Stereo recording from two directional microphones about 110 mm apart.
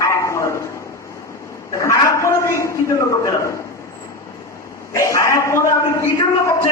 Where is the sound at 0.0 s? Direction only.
25° left (ahead or behind).